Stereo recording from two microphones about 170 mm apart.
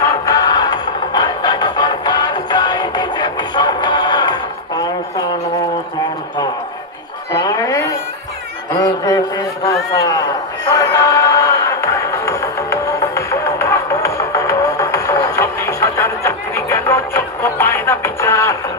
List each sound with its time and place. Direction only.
0.0 s music: 20° left (ahead or behind)
7.3 s a sound: 20° left (ahead or behind)
9.6 s run: 20° left (ahead or behind)
10.7 s music: 20° left (ahead or behind)